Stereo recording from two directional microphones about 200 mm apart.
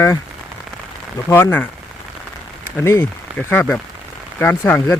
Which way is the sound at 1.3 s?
10° left (ahead or behind).